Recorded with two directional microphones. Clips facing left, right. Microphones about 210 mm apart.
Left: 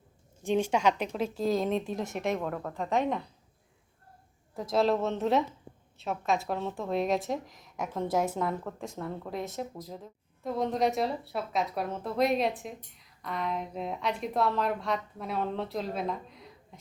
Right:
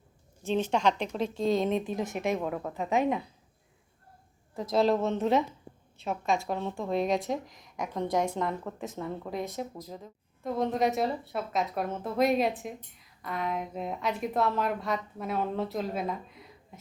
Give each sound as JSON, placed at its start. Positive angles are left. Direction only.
{"t": 0.4, "sound": "a woman's voice", "side_deg": 10}
{"t": 4.5, "sound": "a woman's voice", "side_deg": 0}